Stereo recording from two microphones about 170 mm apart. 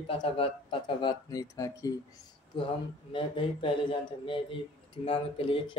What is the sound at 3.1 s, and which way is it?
Speech, 30° left (ahead or behind).